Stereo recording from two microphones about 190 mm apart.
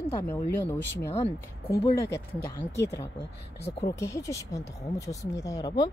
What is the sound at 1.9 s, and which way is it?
Speech, 15° left (ahead or behind).